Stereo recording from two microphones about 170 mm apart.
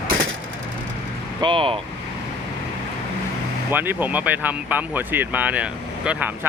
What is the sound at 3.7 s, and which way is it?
Speech, 10° right (ahead or behind).